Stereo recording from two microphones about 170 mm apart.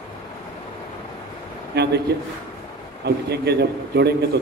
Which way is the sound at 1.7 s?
75° right (ahead or behind).